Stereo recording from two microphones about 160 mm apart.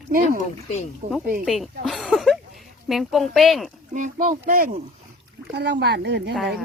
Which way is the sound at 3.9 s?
50° right (ahead or behind).